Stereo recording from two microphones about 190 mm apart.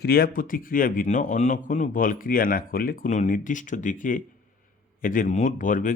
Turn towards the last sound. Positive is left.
turn(degrees=45)  # may be behind; listen again after turning